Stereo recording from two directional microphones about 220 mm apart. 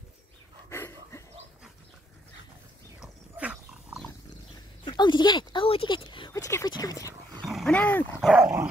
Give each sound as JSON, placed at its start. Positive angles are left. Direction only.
{"t": 0.7, "sound": "dog", "side_deg": 10}
{"t": 3.0, "sound": "pig", "side_deg": -5}
{"t": 4.8, "sound": "speech", "side_deg": 20}
{"t": 7.4, "sound": "speech", "side_deg": 0}